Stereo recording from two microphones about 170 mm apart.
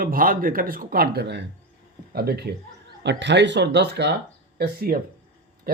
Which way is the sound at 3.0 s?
90° right.